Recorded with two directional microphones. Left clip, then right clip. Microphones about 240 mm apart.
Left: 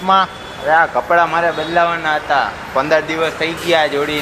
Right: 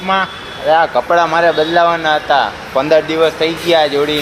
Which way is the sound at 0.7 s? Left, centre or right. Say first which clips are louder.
Right 2 dB; right.